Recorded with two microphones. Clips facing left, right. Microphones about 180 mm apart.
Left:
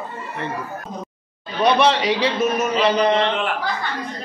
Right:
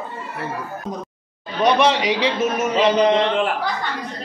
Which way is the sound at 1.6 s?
15° right (ahead or behind).